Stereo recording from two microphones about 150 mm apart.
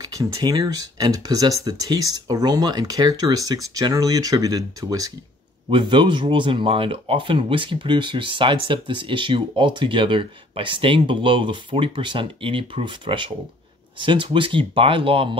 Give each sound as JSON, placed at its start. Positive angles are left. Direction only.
{"t": 0.0, "sound": "speech", "side_deg": -25}